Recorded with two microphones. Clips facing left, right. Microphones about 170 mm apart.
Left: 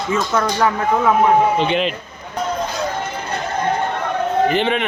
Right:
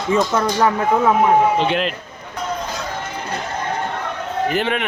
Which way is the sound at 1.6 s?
Centre (ahead or behind).